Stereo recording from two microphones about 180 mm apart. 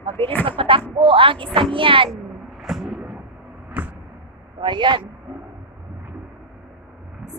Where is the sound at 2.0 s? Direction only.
Centre (ahead or behind).